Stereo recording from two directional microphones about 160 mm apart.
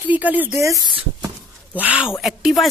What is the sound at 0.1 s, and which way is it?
Speech, 10° right (ahead or behind).